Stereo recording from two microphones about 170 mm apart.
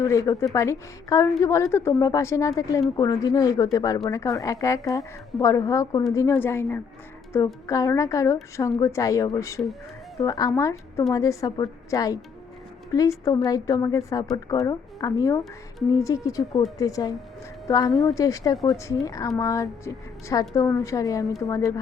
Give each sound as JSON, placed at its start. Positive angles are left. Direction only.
{"t": 0.0, "sound": "a woman's voice", "side_deg": 20}